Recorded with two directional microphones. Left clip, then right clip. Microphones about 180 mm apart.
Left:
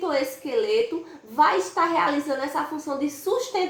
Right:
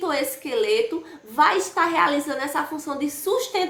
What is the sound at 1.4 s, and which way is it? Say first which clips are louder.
A woman's voice: right 1 dB; 10° right (ahead or behind).